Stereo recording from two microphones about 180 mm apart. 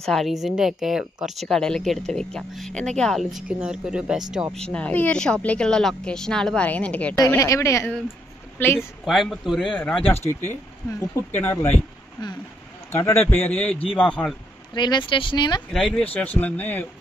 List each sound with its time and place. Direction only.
0.0 s speech: centre (ahead or behind)
9.0 s speech: centre (ahead or behind)
12.9 s speech: 10° left (ahead or behind)
14.7 s speech: 25° left (ahead or behind)
15.7 s speech: 5° left (ahead or behind)